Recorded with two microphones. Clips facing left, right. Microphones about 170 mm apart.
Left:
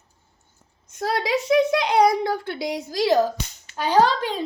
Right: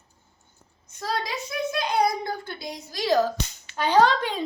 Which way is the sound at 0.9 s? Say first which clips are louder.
Left 6 dB; 65° left (ahead or behind).